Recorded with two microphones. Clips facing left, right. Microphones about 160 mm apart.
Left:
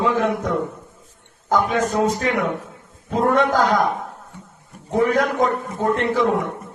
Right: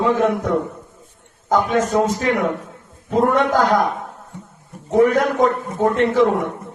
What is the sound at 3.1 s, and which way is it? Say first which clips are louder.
Speech: right 1 dB; 60° right (ahead or behind).